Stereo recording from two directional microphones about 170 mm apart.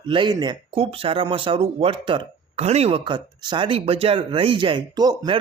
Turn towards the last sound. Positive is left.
turn(degrees=-25)  # may be behind; listen again after turning